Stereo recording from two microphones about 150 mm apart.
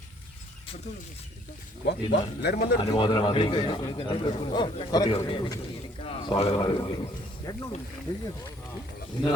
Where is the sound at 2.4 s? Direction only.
90° left.